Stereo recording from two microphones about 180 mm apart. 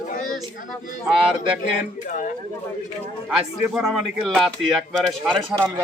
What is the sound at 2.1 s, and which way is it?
Speech, 45° left (ahead or behind).